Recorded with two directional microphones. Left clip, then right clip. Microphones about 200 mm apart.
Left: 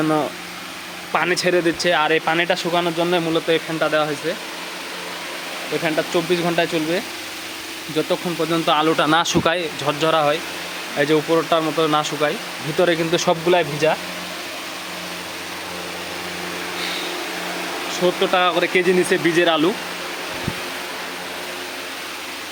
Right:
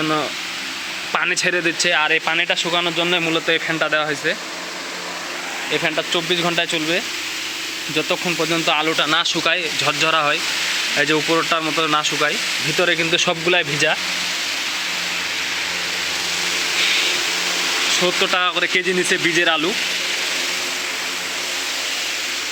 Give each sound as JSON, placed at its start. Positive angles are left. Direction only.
{"t": 1.1, "sound": "speech", "side_deg": 5}
{"t": 3.4, "sound": "sanding", "side_deg": 5}
{"t": 5.8, "sound": "speech", "side_deg": 10}
{"t": 6.4, "sound": "sanding", "side_deg": 0}
{"t": 7.9, "sound": "speech", "side_deg": 15}
{"t": 9.0, "sound": "speech", "side_deg": 30}
{"t": 9.8, "sound": "speech", "side_deg": 10}
{"t": 11.3, "sound": "sanding", "side_deg": 0}
{"t": 12.8, "sound": "speech", "side_deg": 15}
{"t": 13.5, "sound": "sanding", "side_deg": 0}
{"t": 18.0, "sound": "speech", "side_deg": 5}